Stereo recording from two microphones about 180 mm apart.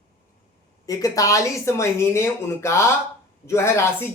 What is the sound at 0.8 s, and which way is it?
Speech, 20° left (ahead or behind).